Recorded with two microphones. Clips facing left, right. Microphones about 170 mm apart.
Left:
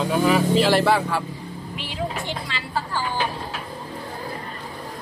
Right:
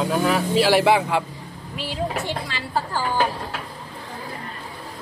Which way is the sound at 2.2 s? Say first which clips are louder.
Right 2 dB; 40° right (ahead or behind).